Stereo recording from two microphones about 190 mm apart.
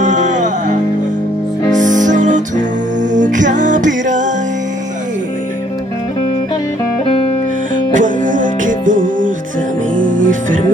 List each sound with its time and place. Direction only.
0.0 s music: 40° right (ahead or behind)
7.9 s music: 45° right (ahead or behind)